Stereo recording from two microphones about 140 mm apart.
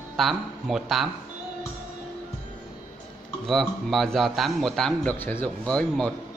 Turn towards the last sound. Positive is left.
turn(degrees=5)  # may be behind; listen again after turning